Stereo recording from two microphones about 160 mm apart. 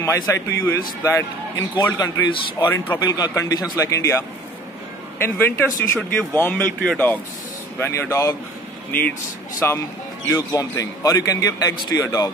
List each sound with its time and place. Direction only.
0.0 s a man's voice: 20° left (ahead or behind)
5.2 s speech: 15° left (ahead or behind)
9.6 s a man's voice: 15° left (ahead or behind)